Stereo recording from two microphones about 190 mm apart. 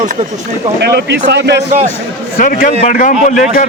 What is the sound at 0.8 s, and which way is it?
Speech, 60° right (ahead or behind).